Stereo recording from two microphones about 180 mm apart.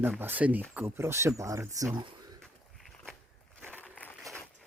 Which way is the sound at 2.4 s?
Centre (ahead or behind).